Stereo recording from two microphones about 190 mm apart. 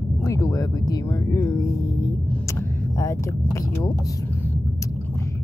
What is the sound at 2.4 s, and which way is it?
Vehicle, 15° left (ahead or behind).